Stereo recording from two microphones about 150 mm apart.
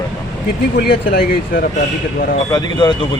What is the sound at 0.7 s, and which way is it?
Speech, 90° left.